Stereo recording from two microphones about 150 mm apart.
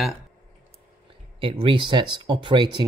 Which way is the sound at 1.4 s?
35° right (ahead or behind).